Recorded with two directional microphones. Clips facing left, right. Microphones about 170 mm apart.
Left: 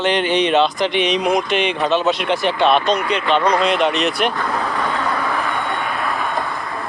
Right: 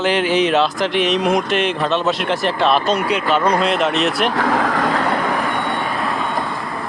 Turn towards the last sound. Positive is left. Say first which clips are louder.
# right 4 dB
turn(degrees=-90)